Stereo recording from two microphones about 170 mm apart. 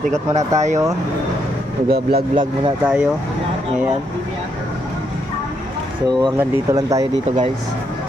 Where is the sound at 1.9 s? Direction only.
65° right (ahead or behind).